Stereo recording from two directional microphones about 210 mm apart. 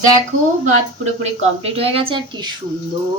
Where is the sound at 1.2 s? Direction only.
30° right (ahead or behind).